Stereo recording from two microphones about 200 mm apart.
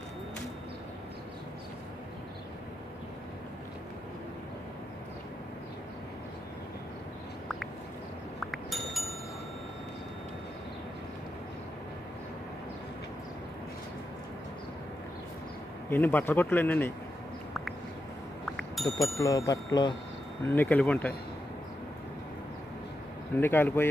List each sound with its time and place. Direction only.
8.4 s wind chime: centre (ahead or behind)
15.9 s speech: 10° left (ahead or behind)
18.4 s bicycle bell: centre (ahead or behind)
19.1 s speech: 15° left (ahead or behind)
23.3 s speech: 10° left (ahead or behind)